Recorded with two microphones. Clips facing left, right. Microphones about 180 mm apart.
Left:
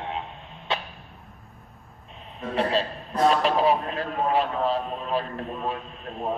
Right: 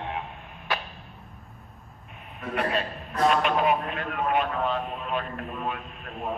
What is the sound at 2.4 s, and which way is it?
A man's voice, 30° left (ahead or behind).